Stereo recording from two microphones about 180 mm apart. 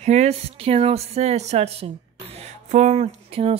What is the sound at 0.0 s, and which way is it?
A woman's voice, 40° right (ahead or behind).